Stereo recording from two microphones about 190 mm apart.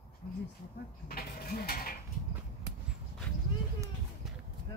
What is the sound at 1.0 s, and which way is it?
Livestock, 55° left (ahead or behind).